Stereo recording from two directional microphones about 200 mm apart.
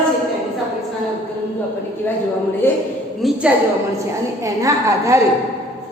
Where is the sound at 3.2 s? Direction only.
Centre (ahead or behind).